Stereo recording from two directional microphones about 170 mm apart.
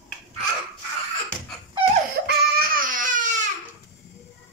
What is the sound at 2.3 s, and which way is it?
Baby cry, 60° right (ahead or behind).